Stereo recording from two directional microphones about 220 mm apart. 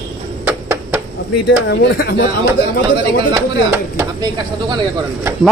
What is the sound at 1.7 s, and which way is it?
Speech, 50° left (ahead or behind).